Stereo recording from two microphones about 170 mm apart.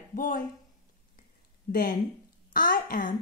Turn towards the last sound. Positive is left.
turn(degrees=50)  # may be behind; listen again after turning